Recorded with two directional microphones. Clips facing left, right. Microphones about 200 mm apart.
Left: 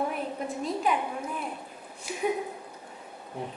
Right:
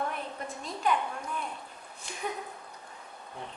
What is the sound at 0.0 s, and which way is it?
A woman's voice, 5° left (ahead or behind).